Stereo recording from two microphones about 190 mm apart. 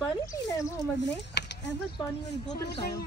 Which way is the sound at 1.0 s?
65° left (ahead or behind).